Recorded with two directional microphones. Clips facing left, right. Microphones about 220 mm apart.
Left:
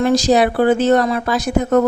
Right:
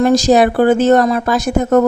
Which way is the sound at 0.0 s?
45° right (ahead or behind).